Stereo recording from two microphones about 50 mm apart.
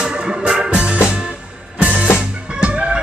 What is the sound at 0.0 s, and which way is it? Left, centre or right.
Organ, centre.